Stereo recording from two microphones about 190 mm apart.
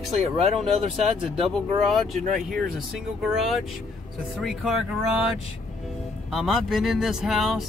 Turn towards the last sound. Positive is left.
turn(degrees=0)  # may be behind; listen again after turning